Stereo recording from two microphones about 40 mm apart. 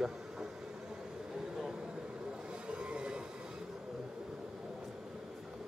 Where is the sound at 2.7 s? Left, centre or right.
Right.